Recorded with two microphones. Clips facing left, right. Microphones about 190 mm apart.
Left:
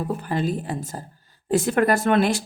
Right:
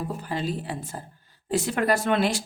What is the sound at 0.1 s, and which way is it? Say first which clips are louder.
Speech: left 5 dB; 55° left (ahead or behind).